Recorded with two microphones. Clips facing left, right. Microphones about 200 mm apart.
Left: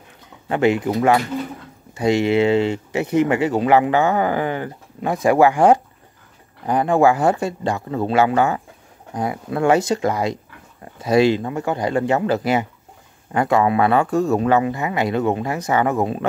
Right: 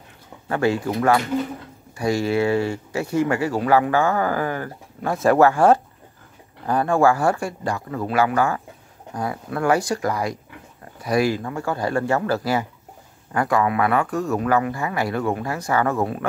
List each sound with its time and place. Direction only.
0.5 s speech: 20° left (ahead or behind)
2.0 s speech: 20° left (ahead or behind)